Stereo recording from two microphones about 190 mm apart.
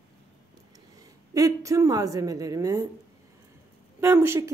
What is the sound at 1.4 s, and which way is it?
A woman's voice, 15° right (ahead or behind).